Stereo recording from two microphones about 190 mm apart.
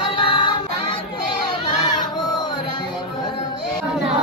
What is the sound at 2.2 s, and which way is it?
Music, 20° left (ahead or behind).